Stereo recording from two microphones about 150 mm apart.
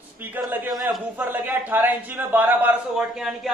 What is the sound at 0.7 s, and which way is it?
A man's voice, 5° right (ahead or behind).